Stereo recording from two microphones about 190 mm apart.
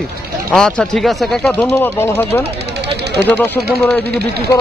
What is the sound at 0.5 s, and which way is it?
Speech, 5° left (ahead or behind).